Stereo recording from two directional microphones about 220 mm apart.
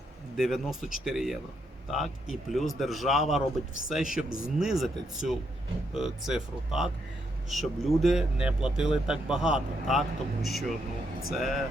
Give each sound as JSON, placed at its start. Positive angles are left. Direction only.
{"t": 0.3, "sound": "speech", "side_deg": 0}